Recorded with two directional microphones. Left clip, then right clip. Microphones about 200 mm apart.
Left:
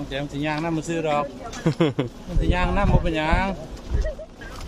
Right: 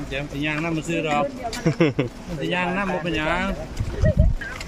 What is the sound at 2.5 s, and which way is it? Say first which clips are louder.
Speech: even; 35° left (ahead or behind).